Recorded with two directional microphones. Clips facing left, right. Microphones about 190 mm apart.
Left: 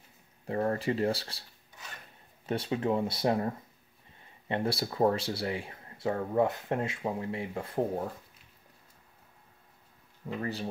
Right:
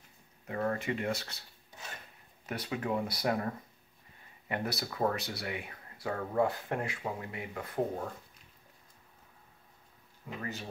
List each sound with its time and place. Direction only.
0.5 s speech: 30° left (ahead or behind)
2.4 s speech: 30° left (ahead or behind)
10.2 s speech: 30° left (ahead or behind)